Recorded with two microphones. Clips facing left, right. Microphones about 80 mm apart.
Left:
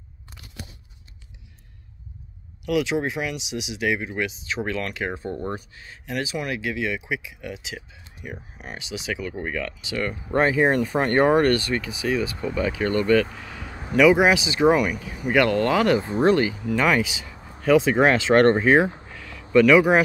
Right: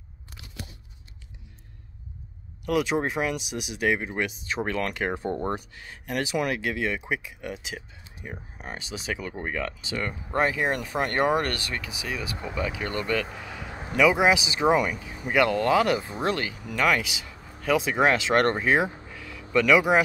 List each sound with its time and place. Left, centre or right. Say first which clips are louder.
2.6 s speech: left 2 dB; right
5.1 s speech: right 1 dB; right
8.2 s speech: left 2 dB; right
10.3 s speech: left 6 dB; centre
16.0 s speech: left 9 dB; left
16.3 s speech: left 9 dB; centre
19.1 s a sound: left 1 dB; centre
19.5 s speech: left 5 dB; centre